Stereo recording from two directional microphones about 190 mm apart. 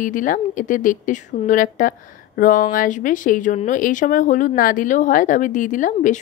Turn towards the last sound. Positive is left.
turn(degrees=40)  # may be behind; listen again after turning